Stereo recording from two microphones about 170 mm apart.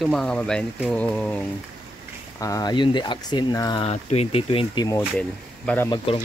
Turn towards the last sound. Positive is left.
turn(degrees=10)  # may be behind; listen again after turning